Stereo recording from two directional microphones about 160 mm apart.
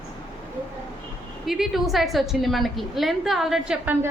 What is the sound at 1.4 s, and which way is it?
A woman's voice, centre (ahead or behind).